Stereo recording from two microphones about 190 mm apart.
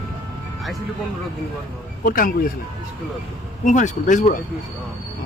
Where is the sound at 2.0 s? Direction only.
45° left (ahead or behind).